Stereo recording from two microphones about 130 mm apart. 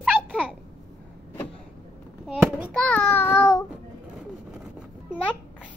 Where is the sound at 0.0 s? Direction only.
10° right (ahead or behind).